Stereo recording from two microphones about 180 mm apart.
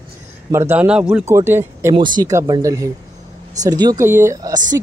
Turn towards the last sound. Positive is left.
turn(degrees=-20)  # may be behind; listen again after turning